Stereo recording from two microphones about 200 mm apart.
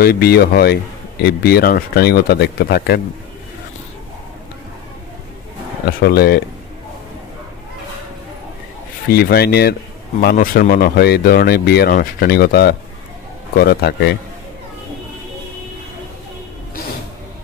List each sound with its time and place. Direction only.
0.0 s speech: 50° left (ahead or behind)
5.9 s speech: 45° left (ahead or behind)
9.0 s speech: 50° left (ahead or behind)